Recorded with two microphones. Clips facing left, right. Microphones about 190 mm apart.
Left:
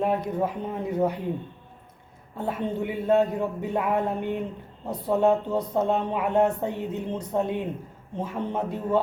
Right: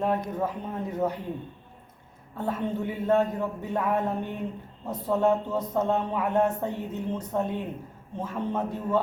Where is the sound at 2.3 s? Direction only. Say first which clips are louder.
Left 1 dB; 15° left (ahead or behind).